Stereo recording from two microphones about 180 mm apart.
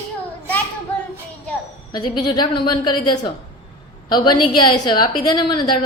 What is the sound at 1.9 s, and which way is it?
A woman's voice, 25° left (ahead or behind).